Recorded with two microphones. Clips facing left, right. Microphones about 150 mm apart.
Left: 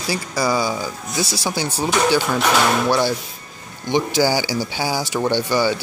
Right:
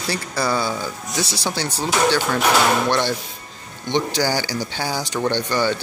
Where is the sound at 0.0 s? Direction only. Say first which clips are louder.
Left 2 dB; 10° left (ahead or behind).